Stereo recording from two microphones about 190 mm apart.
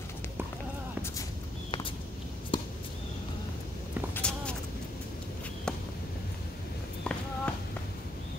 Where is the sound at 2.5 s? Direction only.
25° left (ahead or behind).